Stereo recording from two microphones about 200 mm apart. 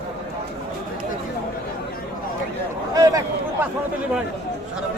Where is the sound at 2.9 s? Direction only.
15° right (ahead or behind).